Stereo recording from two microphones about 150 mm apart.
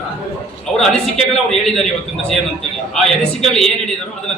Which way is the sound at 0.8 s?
5° left (ahead or behind).